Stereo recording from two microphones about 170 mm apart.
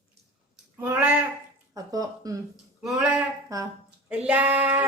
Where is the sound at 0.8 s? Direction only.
10° right (ahead or behind).